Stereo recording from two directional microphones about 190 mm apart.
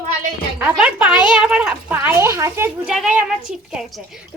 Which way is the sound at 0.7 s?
5° right (ahead or behind).